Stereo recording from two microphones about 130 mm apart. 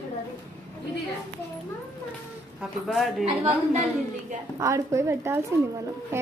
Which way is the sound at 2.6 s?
Centre (ahead or behind).